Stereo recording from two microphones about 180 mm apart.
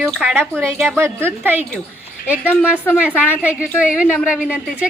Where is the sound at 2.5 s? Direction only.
10° left (ahead or behind).